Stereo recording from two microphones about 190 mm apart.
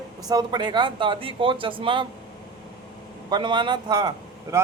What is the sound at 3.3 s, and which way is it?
A man's voice, 25° right (ahead or behind).